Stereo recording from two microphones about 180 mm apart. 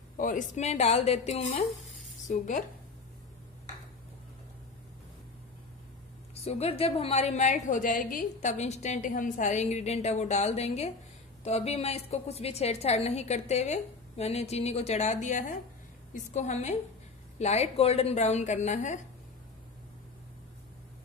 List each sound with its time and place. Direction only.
0.2 s a woman's voice: 45° left (ahead or behind)
6.4 s a woman's voice: 35° left (ahead or behind)